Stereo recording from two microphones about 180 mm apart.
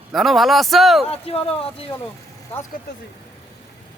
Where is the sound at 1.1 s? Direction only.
30° left (ahead or behind).